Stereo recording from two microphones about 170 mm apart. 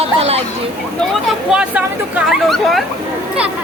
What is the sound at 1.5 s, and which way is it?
Speech, 5° right (ahead or behind).